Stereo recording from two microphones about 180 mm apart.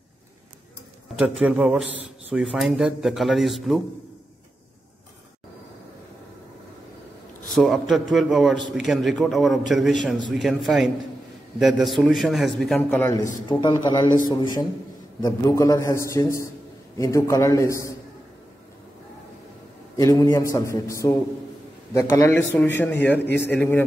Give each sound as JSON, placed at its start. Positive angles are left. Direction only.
{"t": 1.1, "sound": "a man's voice", "side_deg": -5}
{"t": 7.5, "sound": "a man's voice", "side_deg": 0}
{"t": 20.0, "sound": "a man's voice", "side_deg": 20}
{"t": 23.2, "sound": "a man's voice", "side_deg": 70}